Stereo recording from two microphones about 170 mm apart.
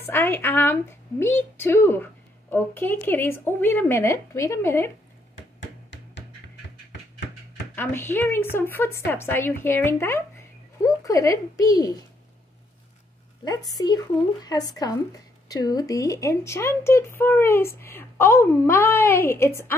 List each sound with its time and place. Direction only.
0.0 s a woman's voice: 15° left (ahead or behind)
7.7 s a woman's voice: 15° left (ahead or behind)
13.7 s a woman's voice: 20° left (ahead or behind)